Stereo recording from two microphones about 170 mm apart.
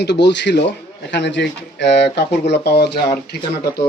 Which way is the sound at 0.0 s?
85° left.